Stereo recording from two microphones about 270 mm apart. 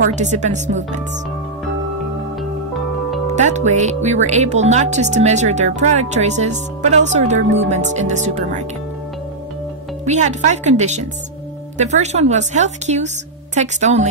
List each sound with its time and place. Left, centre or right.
0.0 s speech: right
3.3 s speech: right
10.0 s speech: right